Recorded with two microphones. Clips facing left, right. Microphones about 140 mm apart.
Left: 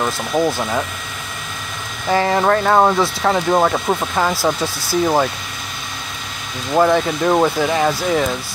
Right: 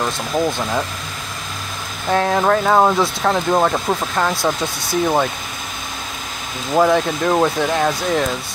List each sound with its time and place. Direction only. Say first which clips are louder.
0.0 s speech: left 2 dB; 5° left (ahead or behind)
2.0 s speech: left 1 dB; centre (ahead or behind)
6.7 s speech: even; centre (ahead or behind)